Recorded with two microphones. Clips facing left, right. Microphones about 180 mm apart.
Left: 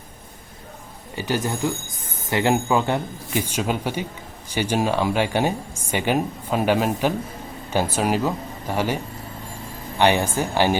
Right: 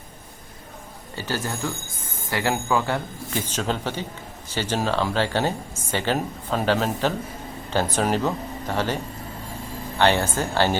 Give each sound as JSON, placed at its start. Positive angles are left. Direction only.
{"t": 1.1, "sound": "speech", "side_deg": 15}
{"t": 10.0, "sound": "speech", "side_deg": 15}